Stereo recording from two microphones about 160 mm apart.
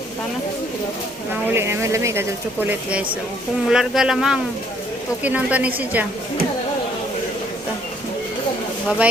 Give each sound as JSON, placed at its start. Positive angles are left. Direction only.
{"t": 1.5, "sound": "speech", "side_deg": -15}